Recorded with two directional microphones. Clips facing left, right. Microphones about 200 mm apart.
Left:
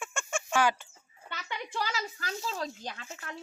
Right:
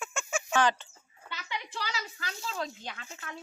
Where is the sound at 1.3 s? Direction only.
50° left (ahead or behind).